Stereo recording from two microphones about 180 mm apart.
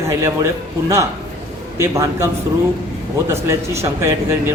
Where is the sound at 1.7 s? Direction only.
15° right (ahead or behind).